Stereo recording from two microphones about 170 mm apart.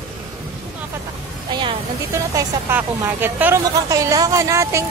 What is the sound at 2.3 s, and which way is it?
A woman's voice, 15° right (ahead or behind).